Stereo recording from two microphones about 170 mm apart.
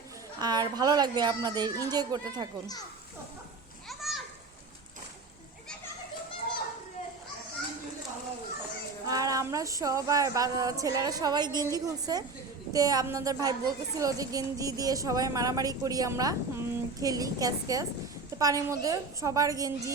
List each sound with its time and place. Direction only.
0.3 s a woman's voice: 25° right (ahead or behind)
3.8 s children playing: centre (ahead or behind)
9.0 s a woman's voice: 20° right (ahead or behind)